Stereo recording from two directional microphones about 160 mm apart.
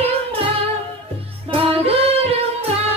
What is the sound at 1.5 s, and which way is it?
Singing, 35° right (ahead or behind).